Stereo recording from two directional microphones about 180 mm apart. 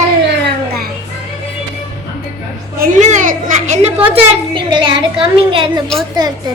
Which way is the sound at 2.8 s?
45° right (ahead or behind).